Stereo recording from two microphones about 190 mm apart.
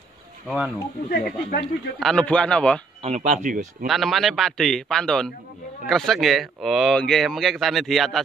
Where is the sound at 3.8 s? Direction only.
Centre (ahead or behind).